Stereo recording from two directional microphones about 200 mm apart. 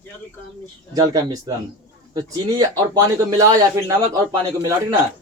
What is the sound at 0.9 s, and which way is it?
Speech, 20° right (ahead or behind).